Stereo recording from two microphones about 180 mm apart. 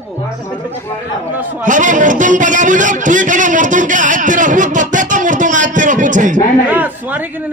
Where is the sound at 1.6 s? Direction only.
45° right (ahead or behind).